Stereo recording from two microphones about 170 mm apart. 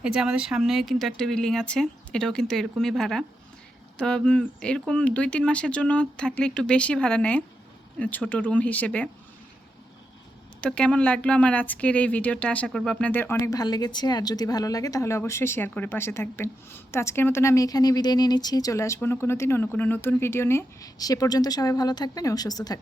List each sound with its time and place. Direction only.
0.0 s speech: 5° right (ahead or behind)
10.6 s speech: 5° left (ahead or behind); by 22.8 s 20° left (ahead or behind)